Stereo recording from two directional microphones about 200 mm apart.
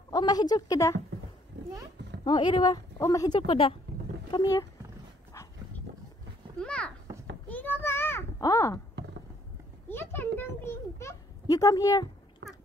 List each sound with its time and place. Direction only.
0.1 s speech: 20° left (ahead or behind)
2.2 s speech: 25° left (ahead or behind)
6.6 s a child's voice: 5° left (ahead or behind)
7.4 s a sound: 10° left (ahead or behind)
9.8 s a child's voice: 10° left (ahead or behind)